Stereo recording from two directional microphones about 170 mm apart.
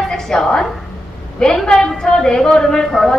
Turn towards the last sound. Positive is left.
turn(degrees=0)  # may be behind; listen again after turning